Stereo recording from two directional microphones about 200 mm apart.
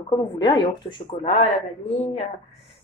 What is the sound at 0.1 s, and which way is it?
A woman's voice, 20° left (ahead or behind).